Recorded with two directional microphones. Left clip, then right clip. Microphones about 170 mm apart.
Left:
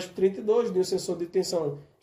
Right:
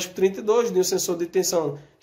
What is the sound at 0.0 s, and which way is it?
Speech, 5° left (ahead or behind).